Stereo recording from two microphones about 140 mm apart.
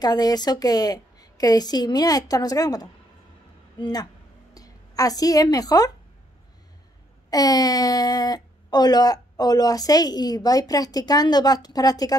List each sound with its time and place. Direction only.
0.0 s a woman's voice: 30° left (ahead or behind)
7.2 s speech: 25° left (ahead or behind)